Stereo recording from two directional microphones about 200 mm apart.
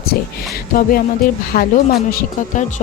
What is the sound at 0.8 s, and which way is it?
A woman's voice, 45° left (ahead or behind).